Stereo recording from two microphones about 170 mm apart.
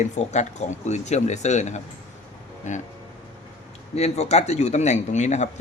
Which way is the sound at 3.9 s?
40° left (ahead or behind).